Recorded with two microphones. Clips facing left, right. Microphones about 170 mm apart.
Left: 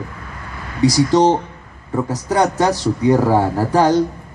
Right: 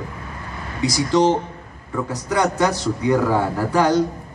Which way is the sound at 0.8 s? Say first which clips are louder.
Left 4 dB; 40° left (ahead or behind).